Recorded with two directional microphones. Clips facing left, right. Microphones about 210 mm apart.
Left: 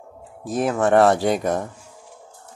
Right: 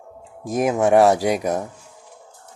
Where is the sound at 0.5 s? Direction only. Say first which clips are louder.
Right 2 dB; 10° right (ahead or behind).